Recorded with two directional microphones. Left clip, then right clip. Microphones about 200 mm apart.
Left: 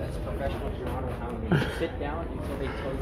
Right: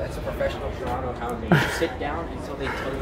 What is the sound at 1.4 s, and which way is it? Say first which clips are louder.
Speech: right 7 dB; 50° right (ahead or behind).